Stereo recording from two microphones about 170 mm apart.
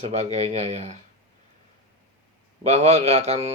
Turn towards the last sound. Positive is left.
turn(degrees=-40)  # may be behind; listen again after turning